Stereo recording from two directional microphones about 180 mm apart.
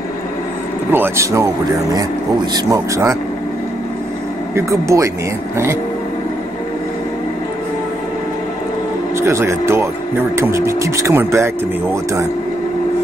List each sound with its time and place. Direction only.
0.9 s speech: 15° right (ahead or behind)
4.6 s speech: 15° right (ahead or behind)
9.1 s speech: 15° right (ahead or behind)